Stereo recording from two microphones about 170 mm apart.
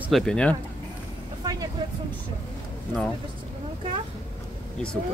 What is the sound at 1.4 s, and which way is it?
Vehicle, 20° right (ahead or behind).